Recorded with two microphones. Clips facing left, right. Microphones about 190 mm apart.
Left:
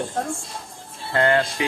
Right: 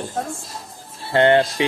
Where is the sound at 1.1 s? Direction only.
25° right (ahead or behind).